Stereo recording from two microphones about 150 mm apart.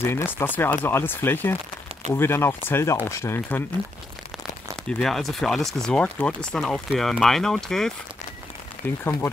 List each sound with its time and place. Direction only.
0.0 s speech: 15° left (ahead or behind)
4.8 s speech: 5° left (ahead or behind)
8.8 s speech: 15° left (ahead or behind)